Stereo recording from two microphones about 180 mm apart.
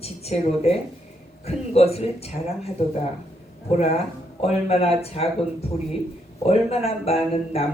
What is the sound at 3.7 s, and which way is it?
Speech, 35° left (ahead or behind).